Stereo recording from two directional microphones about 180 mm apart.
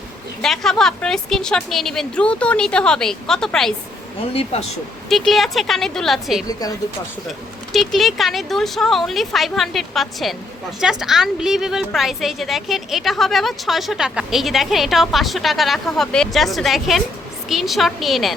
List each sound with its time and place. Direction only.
0.4 s a woman's voice: centre (ahead or behind)
4.2 s speech: 30° left (ahead or behind)
5.0 s a woman's voice: centre (ahead or behind)
6.5 s speech: 20° left (ahead or behind)
7.3 s a woman's voice: centre (ahead or behind)